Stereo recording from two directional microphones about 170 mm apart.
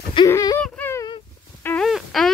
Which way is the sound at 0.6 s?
10° left (ahead or behind).